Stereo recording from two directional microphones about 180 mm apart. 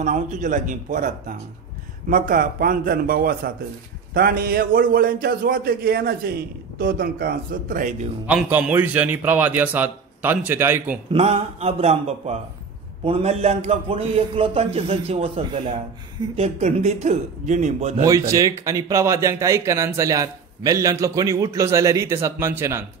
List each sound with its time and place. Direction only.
0.0 s a man's voice: 45° right (ahead or behind)
8.3 s speech: 10° right (ahead or behind)
11.1 s a man's voice: 35° right (ahead or behind)
18.0 s speech: 15° right (ahead or behind)